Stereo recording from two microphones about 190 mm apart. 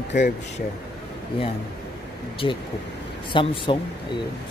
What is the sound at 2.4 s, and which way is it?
Speech, 25° left (ahead or behind).